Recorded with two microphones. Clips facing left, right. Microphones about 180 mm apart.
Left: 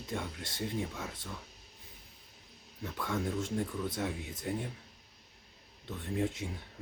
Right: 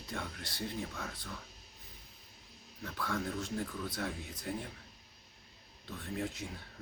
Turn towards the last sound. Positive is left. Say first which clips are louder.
# left 5 dB
turn(degrees=25)  # may be behind; listen again after turning